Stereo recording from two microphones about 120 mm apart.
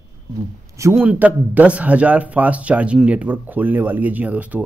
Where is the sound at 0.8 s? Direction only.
25° right (ahead or behind).